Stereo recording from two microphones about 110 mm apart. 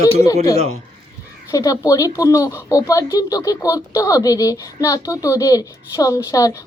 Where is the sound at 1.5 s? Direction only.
30° left (ahead or behind).